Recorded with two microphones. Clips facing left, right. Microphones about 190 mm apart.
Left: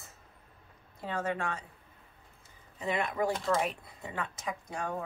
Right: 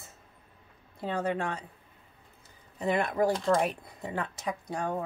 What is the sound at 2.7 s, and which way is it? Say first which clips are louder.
Speech: right 4 dB; 40° right (ahead or behind).